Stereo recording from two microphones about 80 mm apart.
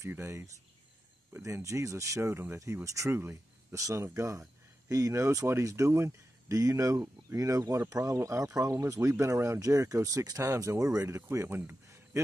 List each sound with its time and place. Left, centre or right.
0.1 s speech: right